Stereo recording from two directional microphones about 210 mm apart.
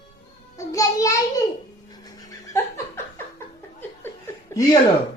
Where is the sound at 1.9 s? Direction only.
20° left (ahead or behind).